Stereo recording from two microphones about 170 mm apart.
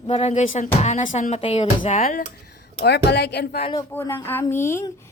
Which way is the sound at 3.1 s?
80° left.